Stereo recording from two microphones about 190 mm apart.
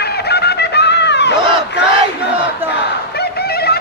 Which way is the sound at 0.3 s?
60° left (ahead or behind).